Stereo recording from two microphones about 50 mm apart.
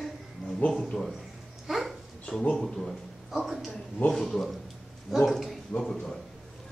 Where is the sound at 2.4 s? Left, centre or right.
Centre.